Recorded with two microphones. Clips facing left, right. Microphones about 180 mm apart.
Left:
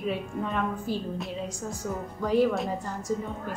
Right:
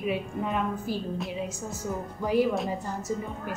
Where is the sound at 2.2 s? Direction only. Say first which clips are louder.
Left 1 dB; 5° right (ahead or behind).